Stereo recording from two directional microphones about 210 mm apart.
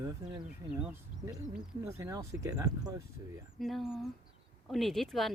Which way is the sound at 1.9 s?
15° right (ahead or behind).